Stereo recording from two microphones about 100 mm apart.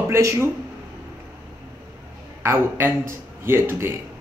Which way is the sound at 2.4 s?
25° right (ahead or behind).